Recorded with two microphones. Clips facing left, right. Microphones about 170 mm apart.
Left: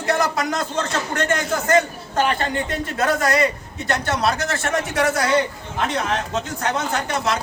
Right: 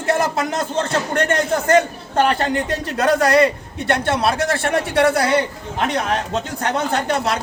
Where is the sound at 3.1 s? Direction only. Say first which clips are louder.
Right 5 dB; 30° right (ahead or behind).